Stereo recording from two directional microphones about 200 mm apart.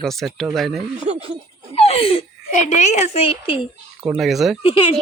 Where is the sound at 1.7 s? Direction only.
30° left (ahead or behind).